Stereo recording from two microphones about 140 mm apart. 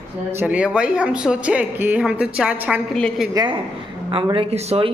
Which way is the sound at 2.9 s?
5° left (ahead or behind).